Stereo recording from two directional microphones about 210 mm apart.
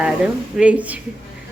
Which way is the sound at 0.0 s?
5° right (ahead or behind).